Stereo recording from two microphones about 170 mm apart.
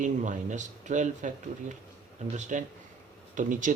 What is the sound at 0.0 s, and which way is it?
A man's voice, 45° right (ahead or behind).